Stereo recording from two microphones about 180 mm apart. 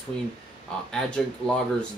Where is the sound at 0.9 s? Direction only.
5° left (ahead or behind).